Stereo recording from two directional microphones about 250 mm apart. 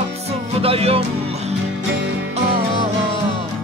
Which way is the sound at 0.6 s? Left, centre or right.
Right.